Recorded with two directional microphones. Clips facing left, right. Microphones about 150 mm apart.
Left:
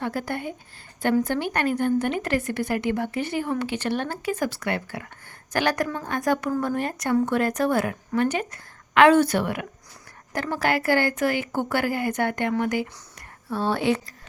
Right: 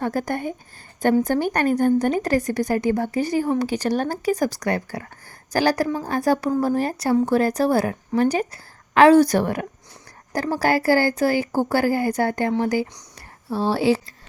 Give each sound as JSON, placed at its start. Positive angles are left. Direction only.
{"t": 0.0, "sound": "a woman's voice", "side_deg": -45}